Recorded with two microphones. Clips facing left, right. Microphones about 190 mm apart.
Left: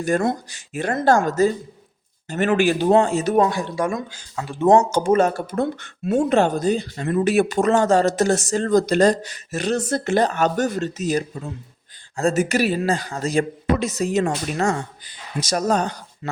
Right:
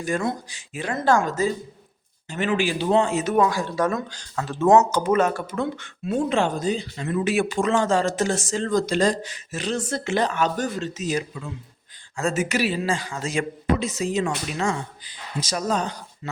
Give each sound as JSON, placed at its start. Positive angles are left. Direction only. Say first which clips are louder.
{"t": 0.0, "sound": "speech", "louder": "left 5 dB", "side_deg": 45}
{"t": 3.2, "sound": "speech", "louder": "left 2 dB", "side_deg": 35}
{"t": 3.5, "sound": "speech", "louder": "even", "side_deg": 20}
{"t": 4.6, "sound": "speech", "louder": "left 2 dB", "side_deg": 25}